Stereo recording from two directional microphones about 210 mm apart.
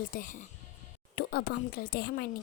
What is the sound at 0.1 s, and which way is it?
Speech, 40° left (ahead or behind).